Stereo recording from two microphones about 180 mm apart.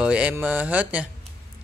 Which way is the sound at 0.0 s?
5° right (ahead or behind).